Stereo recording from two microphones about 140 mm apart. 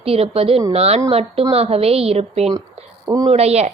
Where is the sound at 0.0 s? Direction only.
45° right (ahead or behind).